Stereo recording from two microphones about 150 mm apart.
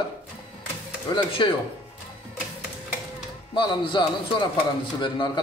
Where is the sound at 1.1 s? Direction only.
35° left (ahead or behind).